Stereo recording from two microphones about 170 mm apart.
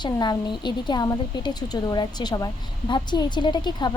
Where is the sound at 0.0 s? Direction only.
25° left (ahead or behind).